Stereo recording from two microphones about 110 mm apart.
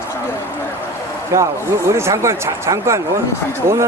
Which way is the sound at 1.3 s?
25° right (ahead or behind).